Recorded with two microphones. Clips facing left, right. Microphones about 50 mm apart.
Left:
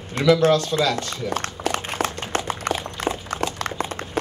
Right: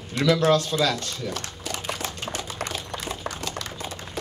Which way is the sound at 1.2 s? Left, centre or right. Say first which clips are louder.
Left 7 dB; left.